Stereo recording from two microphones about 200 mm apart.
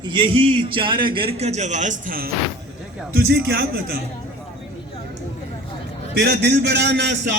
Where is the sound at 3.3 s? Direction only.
50° right (ahead or behind).